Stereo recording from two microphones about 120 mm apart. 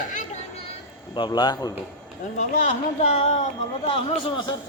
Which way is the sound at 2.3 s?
75° left (ahead or behind).